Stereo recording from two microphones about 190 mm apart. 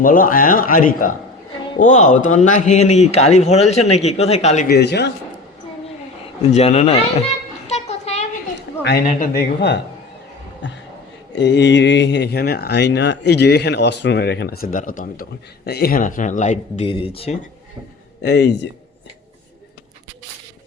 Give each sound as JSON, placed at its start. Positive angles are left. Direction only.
{"t": 0.0, "sound": "a man's voice", "side_deg": 45}
{"t": 4.7, "sound": "speech", "side_deg": 60}
{"t": 6.5, "sound": "speech", "side_deg": 35}
{"t": 7.7, "sound": "a sound", "side_deg": 35}
{"t": 9.2, "sound": "speech", "side_deg": 55}
{"t": 10.6, "sound": "speech", "side_deg": 75}
{"t": 18.2, "sound": "speech", "side_deg": 60}